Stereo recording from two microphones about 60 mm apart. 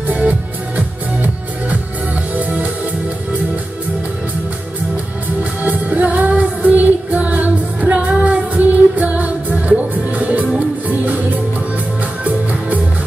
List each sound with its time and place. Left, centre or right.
0.1 s music: right
5.4 s music: right